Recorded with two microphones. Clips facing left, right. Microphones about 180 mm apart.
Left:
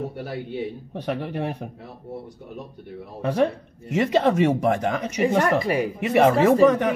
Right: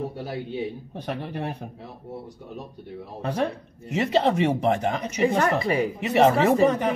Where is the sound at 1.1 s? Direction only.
55° left (ahead or behind).